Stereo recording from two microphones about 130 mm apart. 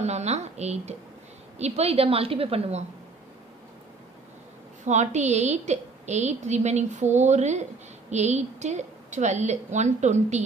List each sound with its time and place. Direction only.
0.0 s a woman's voice: 60° right (ahead or behind)
4.8 s a woman's voice: 65° right (ahead or behind)